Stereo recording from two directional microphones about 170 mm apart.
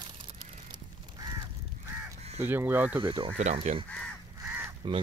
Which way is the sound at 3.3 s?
45° right (ahead or behind).